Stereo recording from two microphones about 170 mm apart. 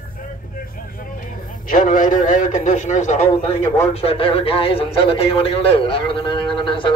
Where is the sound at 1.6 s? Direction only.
50° left (ahead or behind).